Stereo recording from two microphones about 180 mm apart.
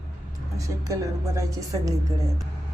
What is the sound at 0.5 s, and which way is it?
A woman's voice, 20° right (ahead or behind).